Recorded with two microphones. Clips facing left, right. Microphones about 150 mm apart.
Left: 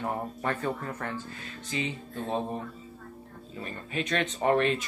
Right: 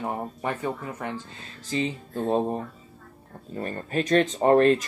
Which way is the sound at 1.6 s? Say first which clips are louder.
Right 6 dB; 35° right (ahead or behind).